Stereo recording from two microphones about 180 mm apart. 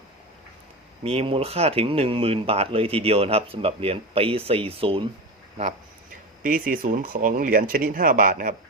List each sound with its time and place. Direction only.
1.0 s speech: 30° right (ahead or behind)
6.4 s speech: 50° right (ahead or behind)